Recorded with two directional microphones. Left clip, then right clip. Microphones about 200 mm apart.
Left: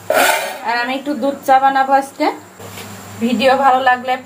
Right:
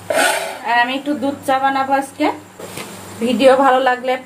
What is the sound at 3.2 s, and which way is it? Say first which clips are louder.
Speech: right 1 dB; 20° right (ahead or behind).